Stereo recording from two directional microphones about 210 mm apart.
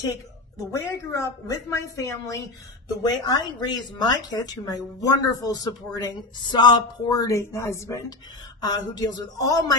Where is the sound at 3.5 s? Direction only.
20° left (ahead or behind).